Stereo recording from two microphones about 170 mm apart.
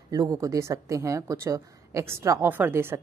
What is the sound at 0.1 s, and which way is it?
A woman's voice, 20° right (ahead or behind).